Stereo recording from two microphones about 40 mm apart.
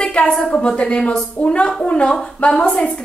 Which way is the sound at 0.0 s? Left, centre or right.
Left.